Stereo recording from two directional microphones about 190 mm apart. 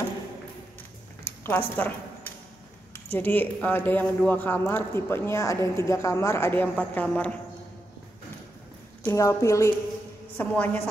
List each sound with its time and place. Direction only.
1.4 s speech: 10° left (ahead or behind)
3.1 s speech: 10° left (ahead or behind)
9.0 s speech: 15° left (ahead or behind)